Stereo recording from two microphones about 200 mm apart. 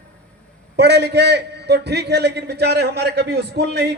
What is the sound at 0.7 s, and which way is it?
A man's voice, 55° right (ahead or behind).